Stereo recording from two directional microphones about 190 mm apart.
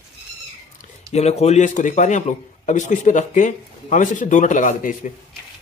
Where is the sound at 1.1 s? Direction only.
35° left (ahead or behind).